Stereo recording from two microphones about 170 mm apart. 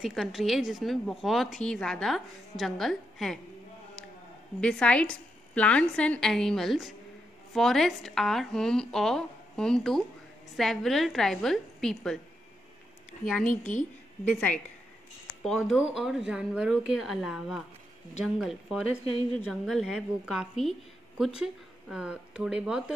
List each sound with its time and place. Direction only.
0.0 s a woman's voice: centre (ahead or behind)
4.6 s a woman's voice: 5° left (ahead or behind)
13.5 s a woman's voice: 50° left (ahead or behind)
14.2 s a woman's voice: 10° left (ahead or behind)